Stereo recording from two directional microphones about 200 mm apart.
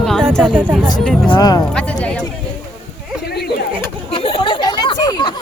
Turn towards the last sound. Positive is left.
turn(degrees=20)  # may be behind; listen again after turning